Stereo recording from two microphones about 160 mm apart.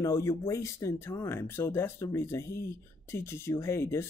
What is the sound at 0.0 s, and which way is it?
Speech, 20° left (ahead or behind).